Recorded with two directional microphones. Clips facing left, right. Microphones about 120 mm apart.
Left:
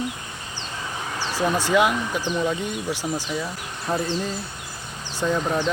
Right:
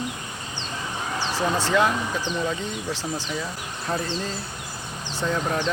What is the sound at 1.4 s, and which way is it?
Speech, 15° left (ahead or behind).